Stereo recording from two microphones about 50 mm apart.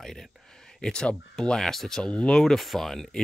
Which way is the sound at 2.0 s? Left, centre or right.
Centre.